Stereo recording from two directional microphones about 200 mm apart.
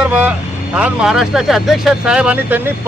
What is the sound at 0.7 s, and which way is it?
Speech, 5° right (ahead or behind).